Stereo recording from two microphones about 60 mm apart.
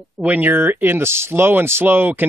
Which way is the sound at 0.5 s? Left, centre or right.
Right.